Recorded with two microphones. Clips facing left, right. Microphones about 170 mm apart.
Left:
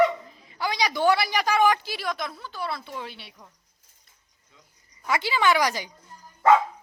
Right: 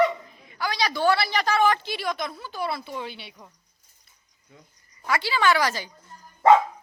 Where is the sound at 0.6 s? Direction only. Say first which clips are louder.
Even; 15° left (ahead or behind); by 2.5 s centre (ahead or behind).